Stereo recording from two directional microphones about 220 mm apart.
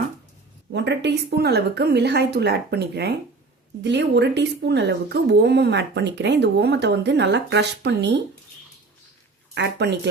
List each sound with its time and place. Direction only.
0.7 s speech: 50° right (ahead or behind)
9.6 s speech: 50° right (ahead or behind)